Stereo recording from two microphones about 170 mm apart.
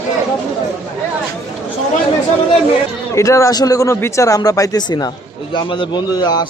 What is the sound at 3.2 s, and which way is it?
A man's voice, 20° left (ahead or behind).